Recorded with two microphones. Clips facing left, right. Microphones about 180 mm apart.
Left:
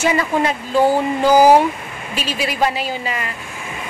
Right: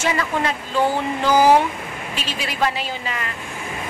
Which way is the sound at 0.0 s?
15° left (ahead or behind).